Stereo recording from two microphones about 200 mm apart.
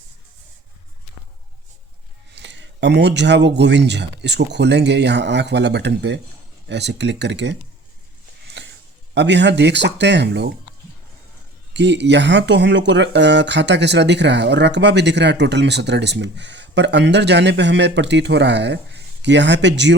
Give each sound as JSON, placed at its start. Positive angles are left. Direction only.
{"t": 2.3, "sound": "speech", "side_deg": -65}
{"t": 8.6, "sound": "a sound", "side_deg": -65}
{"t": 9.1, "sound": "speech", "side_deg": -60}
{"t": 11.7, "sound": "speech", "side_deg": -60}